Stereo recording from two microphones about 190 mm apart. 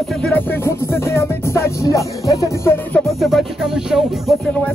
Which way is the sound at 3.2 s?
Centre (ahead or behind).